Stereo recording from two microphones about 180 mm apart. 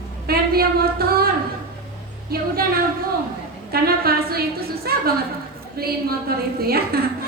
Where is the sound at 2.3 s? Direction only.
60° right (ahead or behind).